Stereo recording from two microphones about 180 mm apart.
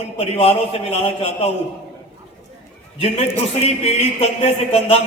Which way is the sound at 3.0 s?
35° left (ahead or behind).